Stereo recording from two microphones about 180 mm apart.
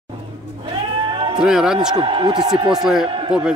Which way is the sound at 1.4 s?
5° right (ahead or behind).